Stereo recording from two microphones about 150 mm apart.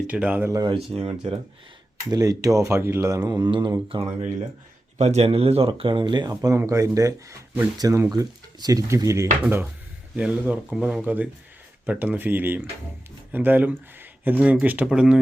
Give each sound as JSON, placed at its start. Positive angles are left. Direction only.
{"t": 0.1, "sound": "speech", "side_deg": -10}
{"t": 0.5, "sound": "speech", "side_deg": -30}
{"t": 0.9, "sound": "speech", "side_deg": -40}
{"t": 2.0, "sound": "speech", "side_deg": -25}
{"t": 4.9, "sound": "speech", "side_deg": -45}
{"t": 6.3, "sound": "speech", "side_deg": -20}
{"t": 10.2, "sound": "speech", "side_deg": -5}